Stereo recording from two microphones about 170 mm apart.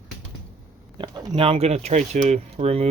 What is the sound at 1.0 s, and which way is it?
Speech, 25° right (ahead or behind).